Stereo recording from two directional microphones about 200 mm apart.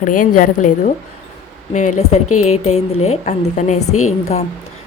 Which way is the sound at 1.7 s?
35° left (ahead or behind).